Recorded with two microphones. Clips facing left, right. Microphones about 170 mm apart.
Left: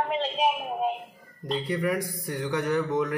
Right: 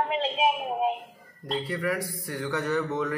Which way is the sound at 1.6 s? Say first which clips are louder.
Left 3 dB; 20° left (ahead or behind).